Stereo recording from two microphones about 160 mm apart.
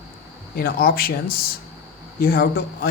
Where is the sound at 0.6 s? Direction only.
70° left (ahead or behind).